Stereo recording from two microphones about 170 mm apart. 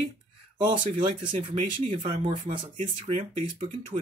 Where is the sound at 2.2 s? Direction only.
30° right (ahead or behind).